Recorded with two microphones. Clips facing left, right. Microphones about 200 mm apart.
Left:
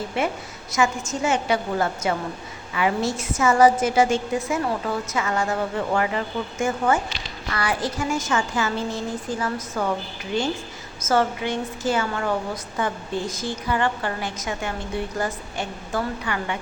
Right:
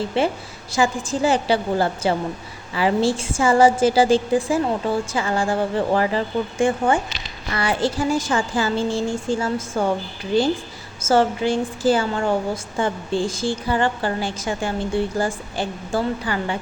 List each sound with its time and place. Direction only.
0.0 s a woman's voice: 30° right (ahead or behind)